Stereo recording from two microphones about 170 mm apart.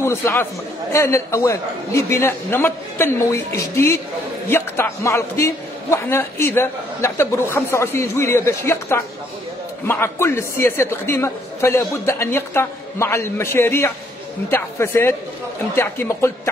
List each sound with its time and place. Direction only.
0.0 s a man's voice: 15° left (ahead or behind)